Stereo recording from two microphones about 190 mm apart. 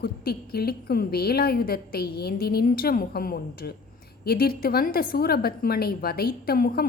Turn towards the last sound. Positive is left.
turn(degrees=50)  # may be behind; listen again after turning